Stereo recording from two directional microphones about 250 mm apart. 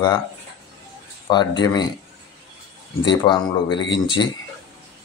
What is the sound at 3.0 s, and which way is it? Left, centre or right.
Speech, centre.